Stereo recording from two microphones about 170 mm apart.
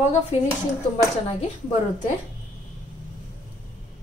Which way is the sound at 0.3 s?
35° left (ahead or behind).